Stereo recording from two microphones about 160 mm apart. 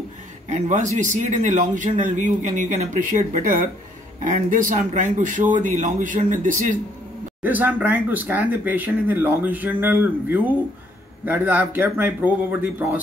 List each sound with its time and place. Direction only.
0.5 s speech: 50° right (ahead or behind)
7.4 s speech: 10° right (ahead or behind)